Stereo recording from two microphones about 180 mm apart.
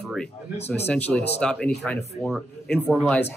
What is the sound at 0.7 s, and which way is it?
Speech, 10° left (ahead or behind).